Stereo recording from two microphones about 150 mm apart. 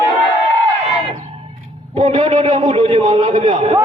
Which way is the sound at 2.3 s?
50° right (ahead or behind).